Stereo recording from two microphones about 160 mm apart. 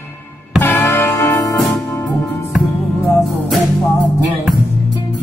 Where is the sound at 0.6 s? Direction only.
15° left (ahead or behind).